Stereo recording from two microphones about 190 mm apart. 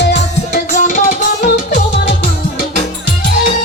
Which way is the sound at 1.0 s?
40° left (ahead or behind).